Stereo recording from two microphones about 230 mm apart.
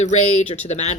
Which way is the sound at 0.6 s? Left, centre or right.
Left.